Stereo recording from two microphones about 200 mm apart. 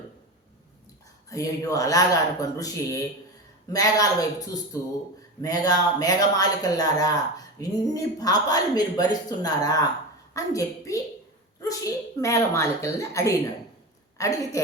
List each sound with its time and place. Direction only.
1.3 s speech: 15° left (ahead or behind)